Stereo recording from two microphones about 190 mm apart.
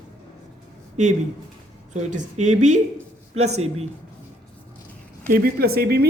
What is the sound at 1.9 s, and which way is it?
Speech, 40° right (ahead or behind).